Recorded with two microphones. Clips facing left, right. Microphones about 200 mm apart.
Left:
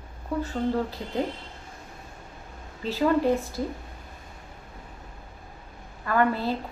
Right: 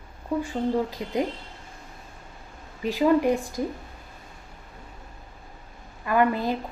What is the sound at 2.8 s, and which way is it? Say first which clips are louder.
Speech: right 2 dB; 15° right (ahead or behind).